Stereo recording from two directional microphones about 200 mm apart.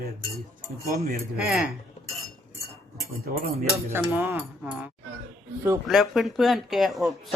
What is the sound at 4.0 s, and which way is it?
Speech, 10° right (ahead or behind).